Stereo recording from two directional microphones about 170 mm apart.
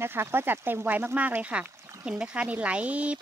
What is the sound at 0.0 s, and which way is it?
Speech, 15° right (ahead or behind).